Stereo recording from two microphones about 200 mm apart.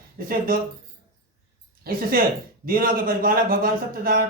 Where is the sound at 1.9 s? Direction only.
45° right (ahead or behind).